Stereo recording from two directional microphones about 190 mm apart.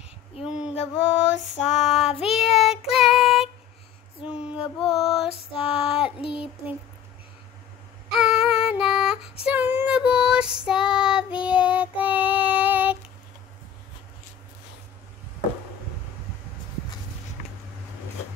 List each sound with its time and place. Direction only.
0.5 s a sound: 5° right (ahead or behind)
1.8 s child singing: centre (ahead or behind)
2.0 s child singing: 30° left (ahead or behind)
2.4 s child singing: centre (ahead or behind)
4.2 s female singing: 5° right (ahead or behind)
4.7 s music: centre (ahead or behind)
5.5 s female singing: 30° left (ahead or behind)
6.2 s child singing: 30° left (ahead or behind)
8.2 s female singing: centre (ahead or behind)
9.5 s child singing: 10° right (ahead or behind)